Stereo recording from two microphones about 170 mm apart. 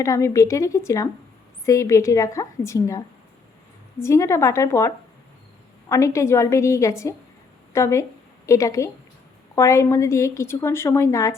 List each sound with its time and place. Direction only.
0.0 s a woman's voice: 20° left (ahead or behind)
4.0 s a woman's voice: 15° left (ahead or behind)
5.9 s a woman's voice: 20° left (ahead or behind)